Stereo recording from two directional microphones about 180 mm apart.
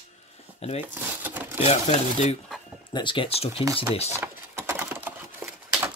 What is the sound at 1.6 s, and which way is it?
Speech, 40° left (ahead or behind).